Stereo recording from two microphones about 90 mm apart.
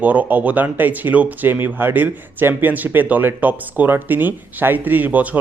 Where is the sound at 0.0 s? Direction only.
15° right (ahead or behind).